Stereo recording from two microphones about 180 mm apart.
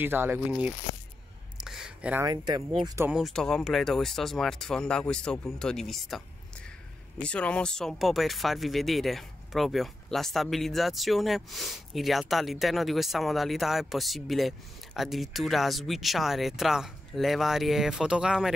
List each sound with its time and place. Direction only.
0.0 s speech: 10° right (ahead or behind)
1.6 s a sound: 5° right (ahead or behind)
2.2 s speech: 20° right (ahead or behind)
3.1 s speech: centre (ahead or behind)